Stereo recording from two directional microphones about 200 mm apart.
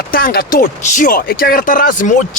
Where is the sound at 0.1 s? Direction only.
50° left (ahead or behind).